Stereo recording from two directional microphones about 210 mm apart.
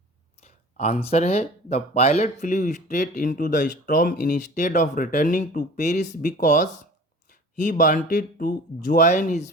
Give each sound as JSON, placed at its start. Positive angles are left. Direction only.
{"t": 0.4, "sound": "speech", "side_deg": 30}